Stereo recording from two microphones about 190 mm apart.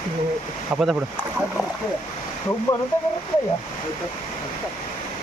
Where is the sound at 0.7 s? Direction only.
5° right (ahead or behind).